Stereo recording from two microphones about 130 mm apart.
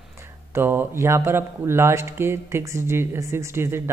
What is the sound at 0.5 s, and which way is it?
Speech, 20° right (ahead or behind).